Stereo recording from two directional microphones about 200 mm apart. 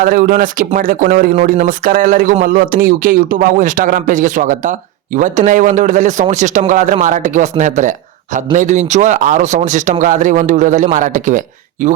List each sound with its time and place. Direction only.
0.0 s a man's voice: 45° right (ahead or behind)